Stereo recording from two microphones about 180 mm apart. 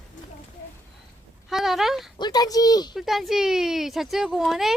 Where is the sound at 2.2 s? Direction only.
20° left (ahead or behind).